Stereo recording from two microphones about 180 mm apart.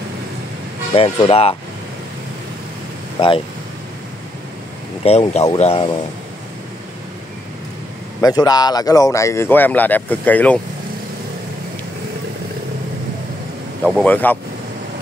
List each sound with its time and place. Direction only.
0.9 s speech: 30° left (ahead or behind)
3.2 s speech: 30° left (ahead or behind)
5.0 s speech: 35° left (ahead or behind)
8.2 s speech: 20° left (ahead or behind)
14.0 s speech: 10° left (ahead or behind)